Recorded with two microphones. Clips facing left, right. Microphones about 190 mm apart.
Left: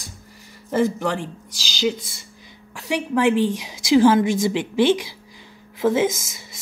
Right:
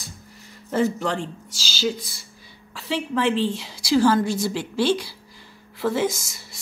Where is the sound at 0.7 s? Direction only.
15° left (ahead or behind).